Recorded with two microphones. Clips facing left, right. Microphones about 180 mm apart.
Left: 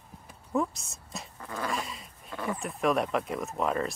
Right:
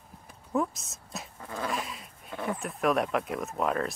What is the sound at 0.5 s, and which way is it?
Speech, centre (ahead or behind).